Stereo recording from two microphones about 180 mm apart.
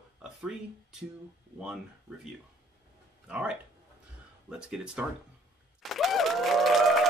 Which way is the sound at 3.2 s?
5° right (ahead or behind).